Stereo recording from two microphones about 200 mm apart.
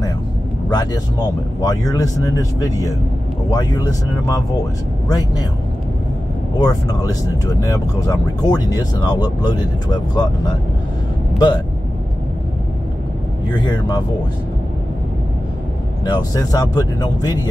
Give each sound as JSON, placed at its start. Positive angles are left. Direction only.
{"t": 0.7, "sound": "speech", "side_deg": 20}
{"t": 6.6, "sound": "speech", "side_deg": 20}
{"t": 11.3, "sound": "speech", "side_deg": 20}
{"t": 13.5, "sound": "speech", "side_deg": 20}
{"t": 16.1, "sound": "speech", "side_deg": 20}